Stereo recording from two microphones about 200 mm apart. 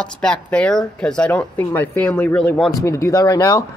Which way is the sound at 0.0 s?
5° left (ahead or behind).